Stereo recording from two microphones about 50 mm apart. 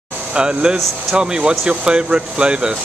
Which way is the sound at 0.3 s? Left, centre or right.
Centre.